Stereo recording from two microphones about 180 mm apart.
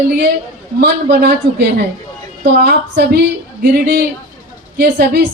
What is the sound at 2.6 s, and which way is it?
A woman's voice, 65° right (ahead or behind).